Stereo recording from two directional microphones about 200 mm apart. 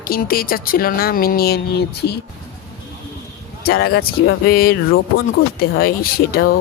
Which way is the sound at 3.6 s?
50° left (ahead or behind).